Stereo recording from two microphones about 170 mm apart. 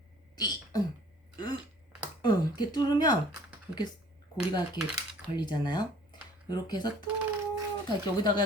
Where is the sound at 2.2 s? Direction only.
25° left (ahead or behind).